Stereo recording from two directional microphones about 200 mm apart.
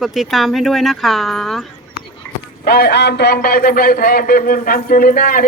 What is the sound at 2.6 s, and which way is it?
A man's voice, 50° left (ahead or behind).